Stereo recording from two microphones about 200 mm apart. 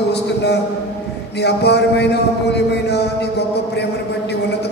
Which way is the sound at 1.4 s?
55° left (ahead or behind).